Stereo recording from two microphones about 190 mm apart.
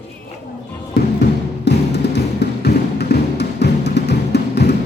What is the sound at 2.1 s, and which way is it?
Music, 60° left (ahead or behind).